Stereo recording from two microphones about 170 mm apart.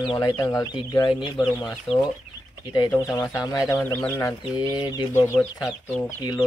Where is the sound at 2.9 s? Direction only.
15° left (ahead or behind).